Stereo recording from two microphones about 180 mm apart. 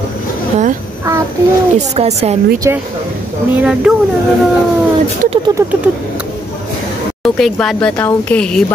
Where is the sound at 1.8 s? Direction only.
35° right (ahead or behind).